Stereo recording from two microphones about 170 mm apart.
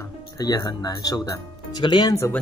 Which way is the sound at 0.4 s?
25° left (ahead or behind).